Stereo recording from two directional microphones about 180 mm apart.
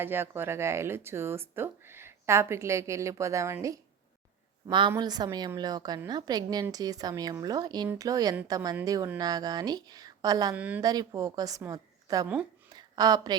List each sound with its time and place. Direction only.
0.0 s speech: 10° right (ahead or behind)
4.9 s speech: 20° right (ahead or behind)
10.5 s speech: 10° right (ahead or behind)
10.8 s speech: 20° right (ahead or behind)
12.7 s a sound: 20° right (ahead or behind)